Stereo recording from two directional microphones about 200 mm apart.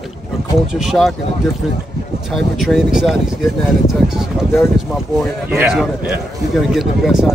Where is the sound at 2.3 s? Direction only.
Centre (ahead or behind).